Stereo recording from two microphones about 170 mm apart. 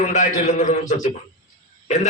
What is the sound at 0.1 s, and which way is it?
A man's voice, 45° left (ahead or behind).